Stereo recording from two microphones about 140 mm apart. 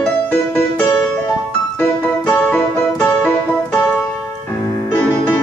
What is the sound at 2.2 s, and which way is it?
Piano, 10° left (ahead or behind).